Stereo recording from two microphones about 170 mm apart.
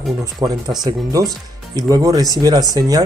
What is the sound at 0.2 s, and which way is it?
Speech, 25° right (ahead or behind).